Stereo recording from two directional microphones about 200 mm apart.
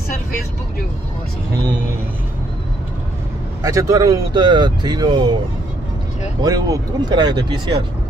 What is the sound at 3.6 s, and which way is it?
Speech, 15° right (ahead or behind).